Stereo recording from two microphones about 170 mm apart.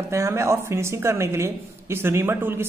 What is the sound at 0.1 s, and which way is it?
A woman's voice, 15° right (ahead or behind).